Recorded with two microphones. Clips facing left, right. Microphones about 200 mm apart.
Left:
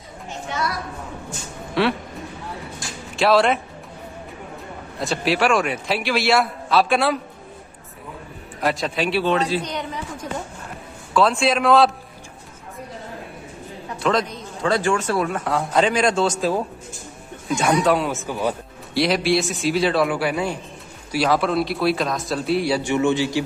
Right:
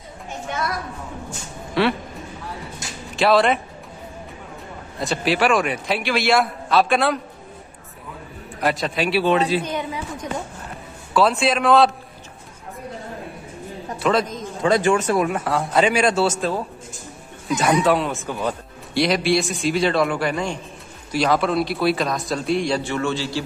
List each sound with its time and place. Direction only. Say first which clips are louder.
1.8 s speech: right 1 dB; centre (ahead or behind)
3.2 s speech: even; centre (ahead or behind)
4.9 s speech: even; centre (ahead or behind)
8.5 s speech: right 1 dB; centre (ahead or behind)
11.1 s speech: even; centre (ahead or behind)
13.9 s a sound: right 1 dB; 5° right (ahead or behind)
14.6 s speech: right 3 dB; 20° right (ahead or behind)
15.4 s speech: right 1 dB; centre (ahead or behind)
17.5 s speech: even; centre (ahead or behind); by 23.4 s 15° left (ahead or behind)